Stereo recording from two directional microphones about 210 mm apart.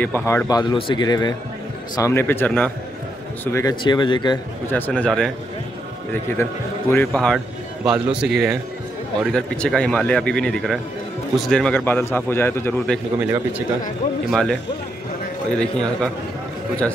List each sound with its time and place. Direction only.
0.0 s a man's voice: 10° left (ahead or behind)
3.5 s speech: 20° left (ahead or behind)
4.6 s speech: 10° left (ahead or behind)
6.9 s a man's voice: 5° left (ahead or behind)
14.3 s speech: centre (ahead or behind)